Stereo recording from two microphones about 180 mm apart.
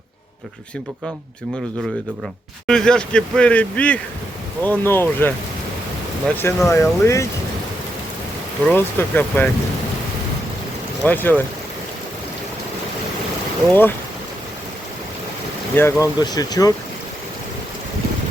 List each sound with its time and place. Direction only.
2.6 s speech: 5° left (ahead or behind)
8.6 s speech: 10° left (ahead or behind)
11.0 s speech: 10° left (ahead or behind)
13.7 s speech: 10° left (ahead or behind)
15.7 s speech: 10° left (ahead or behind)